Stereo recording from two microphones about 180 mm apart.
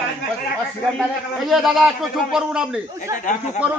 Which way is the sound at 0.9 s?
Centre (ahead or behind).